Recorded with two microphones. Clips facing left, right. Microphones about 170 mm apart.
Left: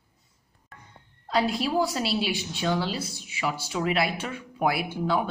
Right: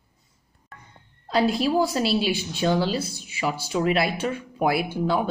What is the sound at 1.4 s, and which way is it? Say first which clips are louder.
Speech: right 4 dB; 30° right (ahead or behind).